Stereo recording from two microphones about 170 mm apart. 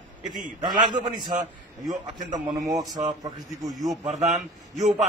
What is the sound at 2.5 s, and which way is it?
A man's voice, 20° right (ahead or behind).